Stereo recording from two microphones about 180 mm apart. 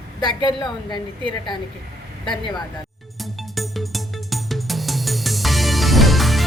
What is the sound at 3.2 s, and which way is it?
Music, centre (ahead or behind).